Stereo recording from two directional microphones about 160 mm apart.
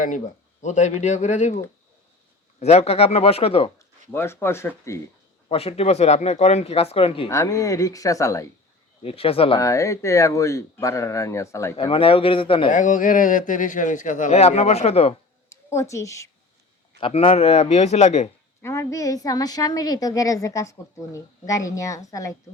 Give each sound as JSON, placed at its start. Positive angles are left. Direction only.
{"t": 0.6, "sound": "a man's voice", "side_deg": 45}
{"t": 2.6, "sound": "speech", "side_deg": 40}
{"t": 4.1, "sound": "speech", "side_deg": 15}
{"t": 5.5, "sound": "speech", "side_deg": 35}
{"t": 7.3, "sound": "a woman's voice", "side_deg": 20}
{"t": 9.0, "sound": "speech", "side_deg": 35}
{"t": 9.6, "sound": "a woman's voice", "side_deg": 20}
{"t": 11.8, "sound": "speech", "side_deg": 35}
{"t": 12.7, "sound": "a man's voice", "side_deg": 55}
{"t": 15.7, "sound": "a woman's voice", "side_deg": 20}
{"t": 17.0, "sound": "speech", "side_deg": 40}
{"t": 18.6, "sound": "a woman's voice", "side_deg": 20}